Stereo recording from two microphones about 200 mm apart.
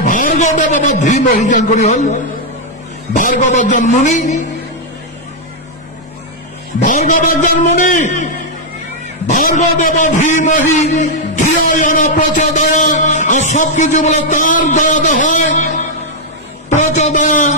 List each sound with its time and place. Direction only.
0.0 s a man's voice: 40° left (ahead or behind)
6.8 s a man's voice: 40° left (ahead or behind)
9.3 s a man's voice: 40° left (ahead or behind)